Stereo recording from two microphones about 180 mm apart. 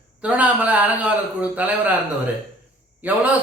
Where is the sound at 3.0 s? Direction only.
10° right (ahead or behind).